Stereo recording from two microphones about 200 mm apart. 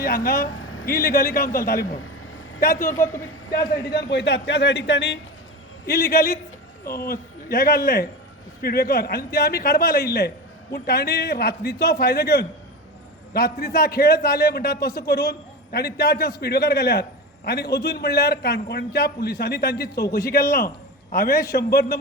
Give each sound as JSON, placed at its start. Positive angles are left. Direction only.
{"t": 0.0, "sound": "a man's voice", "side_deg": 45}
{"t": 0.6, "sound": "a sound", "side_deg": 90}
{"t": 0.9, "sound": "a man's voice", "side_deg": 45}
{"t": 3.9, "sound": "a man's voice", "side_deg": 55}
{"t": 5.8, "sound": "a man's voice", "side_deg": 50}